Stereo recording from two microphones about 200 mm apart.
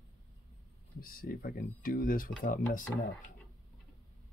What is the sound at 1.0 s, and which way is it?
Speech, 45° left (ahead or behind).